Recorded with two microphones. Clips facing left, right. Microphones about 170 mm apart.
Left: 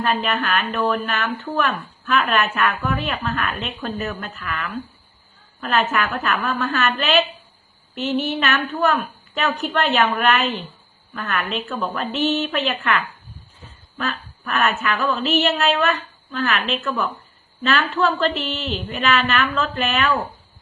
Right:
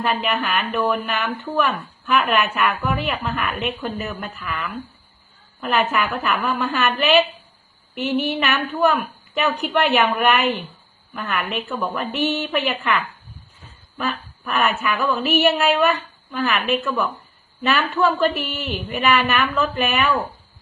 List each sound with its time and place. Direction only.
0.0 s speech: 15° right (ahead or behind)
5.6 s speech: 15° right (ahead or behind)
14.0 s speech: 15° right (ahead or behind)